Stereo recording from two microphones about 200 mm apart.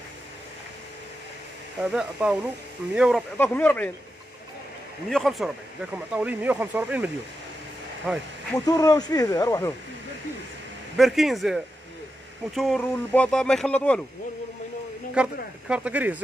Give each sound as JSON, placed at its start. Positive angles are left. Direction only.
{"t": 1.8, "sound": "speech", "side_deg": -5}
{"t": 3.4, "sound": "speech", "side_deg": 5}
{"t": 5.1, "sound": "speech", "side_deg": 0}
{"t": 8.6, "sound": "speech", "side_deg": 20}
{"t": 11.0, "sound": "speech", "side_deg": 0}
{"t": 15.2, "sound": "speech", "side_deg": -5}